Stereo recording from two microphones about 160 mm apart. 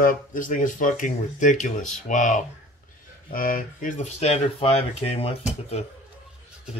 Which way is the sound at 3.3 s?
60° left (ahead or behind).